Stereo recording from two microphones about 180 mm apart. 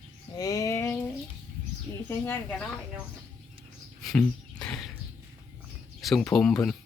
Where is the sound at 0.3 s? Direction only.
20° left (ahead or behind).